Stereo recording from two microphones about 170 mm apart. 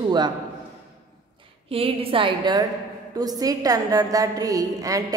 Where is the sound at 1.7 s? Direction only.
35° right (ahead or behind).